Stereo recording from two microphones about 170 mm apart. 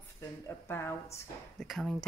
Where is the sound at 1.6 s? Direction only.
Centre (ahead or behind).